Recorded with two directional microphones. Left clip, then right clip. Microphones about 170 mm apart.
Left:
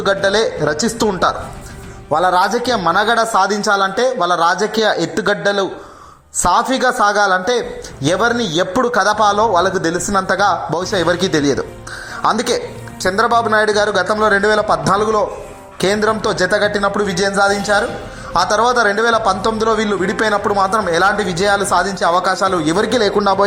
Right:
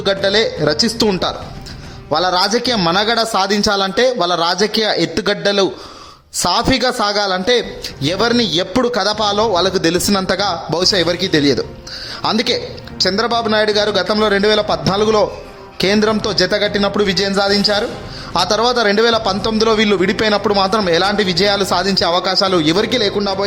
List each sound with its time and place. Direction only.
0.0 s a man's voice: 20° right (ahead or behind)
20.5 s a man's voice: 40° right (ahead or behind)
22.9 s speech: 15° right (ahead or behind)